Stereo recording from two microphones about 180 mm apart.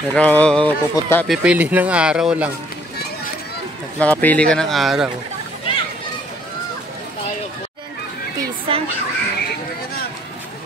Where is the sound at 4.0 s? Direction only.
10° left (ahead or behind).